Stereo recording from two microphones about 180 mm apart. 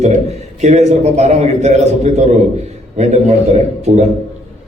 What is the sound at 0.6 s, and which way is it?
A man's voice, 40° right (ahead or behind).